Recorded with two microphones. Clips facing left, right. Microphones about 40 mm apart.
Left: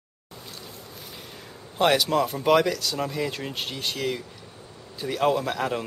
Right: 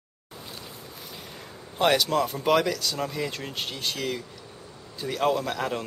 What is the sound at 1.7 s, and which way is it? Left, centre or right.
A man's voice, centre.